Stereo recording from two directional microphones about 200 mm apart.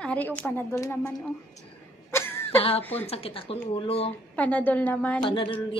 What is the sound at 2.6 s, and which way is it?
Speech, 30° left (ahead or behind).